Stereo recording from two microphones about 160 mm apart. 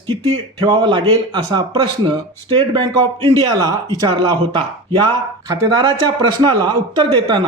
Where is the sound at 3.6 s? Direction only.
25° right (ahead or behind).